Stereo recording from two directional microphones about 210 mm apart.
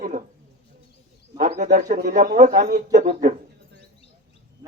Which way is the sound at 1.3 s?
40° right (ahead or behind).